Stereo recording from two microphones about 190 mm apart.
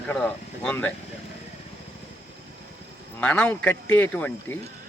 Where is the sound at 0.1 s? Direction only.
5° left (ahead or behind).